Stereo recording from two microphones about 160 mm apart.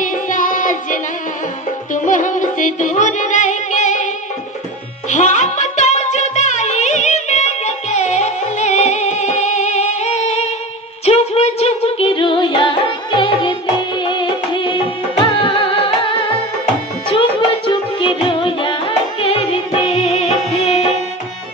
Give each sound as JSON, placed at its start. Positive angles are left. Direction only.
{"t": 0.0, "sound": "music", "side_deg": 55}
{"t": 2.0, "sound": "music", "side_deg": 50}
{"t": 5.1, "sound": "music", "side_deg": 50}